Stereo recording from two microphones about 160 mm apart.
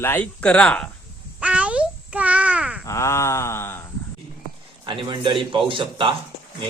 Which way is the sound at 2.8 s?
20° left (ahead or behind).